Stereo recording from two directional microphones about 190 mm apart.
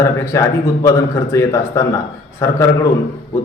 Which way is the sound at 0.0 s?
15° left (ahead or behind).